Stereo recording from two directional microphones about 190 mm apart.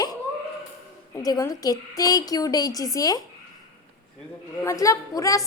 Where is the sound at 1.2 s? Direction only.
20° left (ahead or behind).